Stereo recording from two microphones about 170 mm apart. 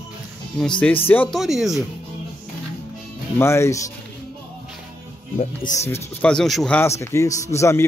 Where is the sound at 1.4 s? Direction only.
Centre (ahead or behind).